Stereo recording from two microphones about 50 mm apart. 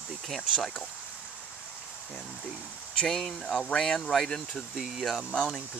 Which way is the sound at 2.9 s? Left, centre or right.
Centre.